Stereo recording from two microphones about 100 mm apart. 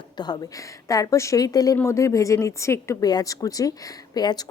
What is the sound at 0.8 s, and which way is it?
Speech, 35° left (ahead or behind).